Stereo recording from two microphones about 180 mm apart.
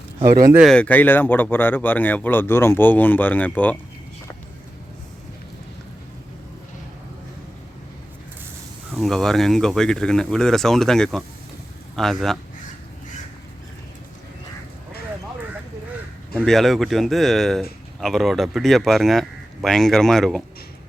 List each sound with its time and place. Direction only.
0.5 s speech: centre (ahead or behind)
9.0 s speech: centre (ahead or behind)
16.5 s speech: centre (ahead or behind)